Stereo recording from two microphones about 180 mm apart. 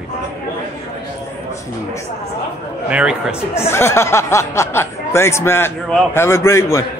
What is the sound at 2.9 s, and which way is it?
Speech, 5° right (ahead or behind).